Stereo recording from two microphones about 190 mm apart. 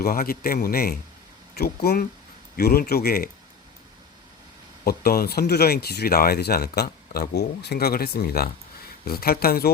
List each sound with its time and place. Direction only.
0.0 s speech: 50° left (ahead or behind)
4.9 s speech: 55° left (ahead or behind)